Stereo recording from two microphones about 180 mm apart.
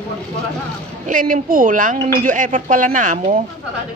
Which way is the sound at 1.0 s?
45° right (ahead or behind).